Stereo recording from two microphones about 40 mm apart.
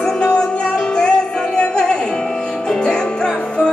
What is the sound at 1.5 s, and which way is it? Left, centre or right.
Music, left.